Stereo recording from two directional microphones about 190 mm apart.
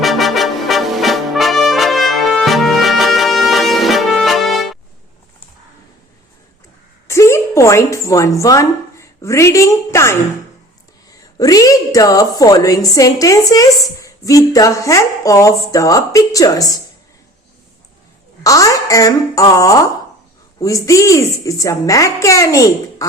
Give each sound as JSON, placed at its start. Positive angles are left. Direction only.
{"t": 0.0, "sound": "brass instrument", "side_deg": 0}
{"t": 7.1, "sound": "a woman's voice", "side_deg": 15}
{"t": 11.3, "sound": "a woman's voice", "side_deg": 20}
{"t": 18.4, "sound": "speech", "side_deg": 15}